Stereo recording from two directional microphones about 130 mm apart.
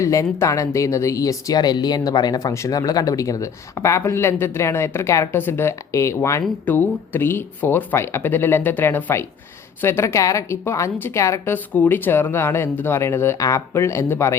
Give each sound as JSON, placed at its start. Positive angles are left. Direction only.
{"t": 0.0, "sound": "a woman's voice", "side_deg": 25}